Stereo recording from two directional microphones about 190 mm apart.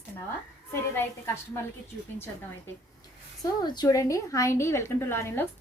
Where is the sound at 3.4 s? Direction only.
20° left (ahead or behind).